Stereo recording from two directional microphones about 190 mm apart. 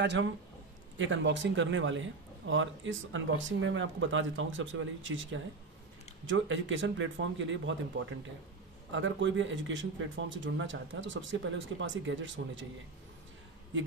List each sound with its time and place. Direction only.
0.0 s speech: 65° right (ahead or behind)
0.9 s speech: 85° right